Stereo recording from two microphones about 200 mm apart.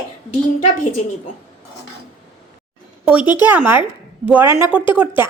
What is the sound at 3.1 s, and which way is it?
A woman's voice, 5° right (ahead or behind).